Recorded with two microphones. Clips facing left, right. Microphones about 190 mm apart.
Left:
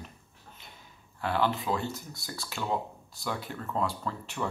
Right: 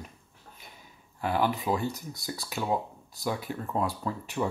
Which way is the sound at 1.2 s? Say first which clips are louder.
Right 1 dB; 15° right (ahead or behind).